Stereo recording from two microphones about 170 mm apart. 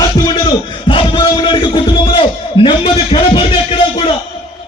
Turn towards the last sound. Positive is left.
turn(degrees=35)  # may be behind; listen again after turning